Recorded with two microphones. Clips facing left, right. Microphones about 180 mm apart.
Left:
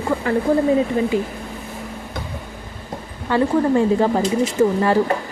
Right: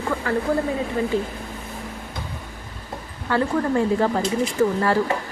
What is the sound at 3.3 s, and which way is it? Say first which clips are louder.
A woman's voice: left 4 dB; 20° left (ahead or behind).